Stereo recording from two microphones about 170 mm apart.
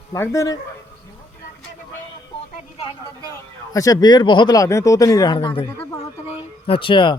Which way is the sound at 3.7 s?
20° left (ahead or behind).